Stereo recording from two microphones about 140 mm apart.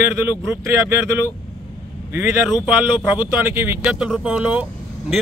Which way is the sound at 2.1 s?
20° right (ahead or behind).